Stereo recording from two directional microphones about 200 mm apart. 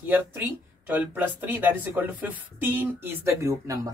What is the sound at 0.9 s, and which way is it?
A man's voice, 10° right (ahead or behind).